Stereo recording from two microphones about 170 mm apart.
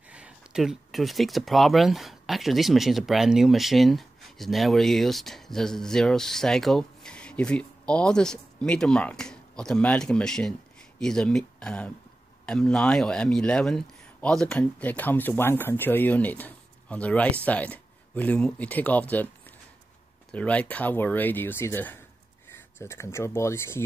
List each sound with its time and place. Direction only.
0.1 s a man's voice: 5° right (ahead or behind)
20.2 s a man's voice: 10° left (ahead or behind)